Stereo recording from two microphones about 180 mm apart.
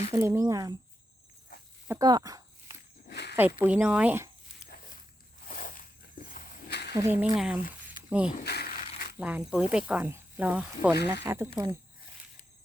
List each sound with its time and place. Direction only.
0.1 s speech: 15° right (ahead or behind)
1.9 s speech: 20° right (ahead or behind)
2.6 s a sound: 65° left (ahead or behind)
3.3 s speech: 10° right (ahead or behind)
4.6 s dog: 50° left (ahead or behind)
5.5 s a sound: 50° left (ahead or behind); by 6.9 s 65° left (ahead or behind)
6.9 s speech: 10° right (ahead or behind)
8.4 s speech: 60° left (ahead or behind)
9.2 s speech: 5° right (ahead or behind)